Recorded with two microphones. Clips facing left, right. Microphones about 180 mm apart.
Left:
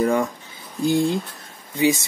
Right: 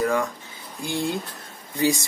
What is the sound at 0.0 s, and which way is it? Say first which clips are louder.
Speech: left 3 dB; 20° left (ahead or behind).